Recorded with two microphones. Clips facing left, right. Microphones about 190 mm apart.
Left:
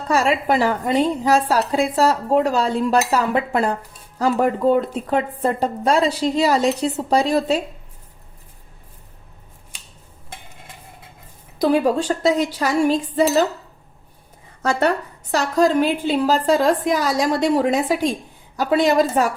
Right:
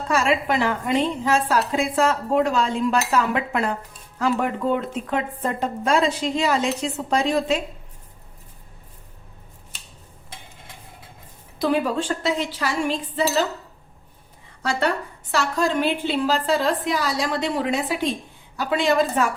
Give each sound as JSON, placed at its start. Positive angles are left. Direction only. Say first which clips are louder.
{"t": 0.1, "sound": "a woman's voice", "louder": "left 3 dB", "side_deg": 40}
{"t": 11.6, "sound": "a woman's voice", "louder": "left 5 dB", "side_deg": 40}
{"t": 14.6, "sound": "a woman's voice", "louder": "left 4 dB", "side_deg": 45}